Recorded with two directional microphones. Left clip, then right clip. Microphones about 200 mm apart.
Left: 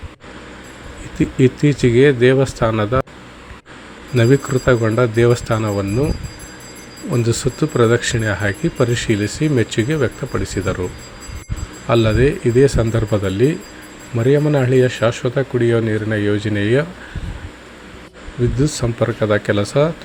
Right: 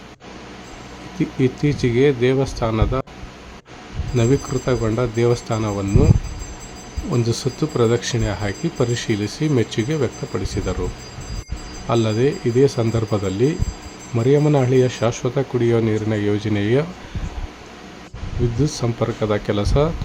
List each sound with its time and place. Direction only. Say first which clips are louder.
1.2 s speech: left 5 dB; 5° left (ahead or behind)
4.2 s speech: left 5 dB; 5° left (ahead or behind)
7.1 s speech: left 3 dB; centre (ahead or behind)
11.9 s speech: left 4 dB; centre (ahead or behind)
18.6 s speech: left 3 dB; centre (ahead or behind)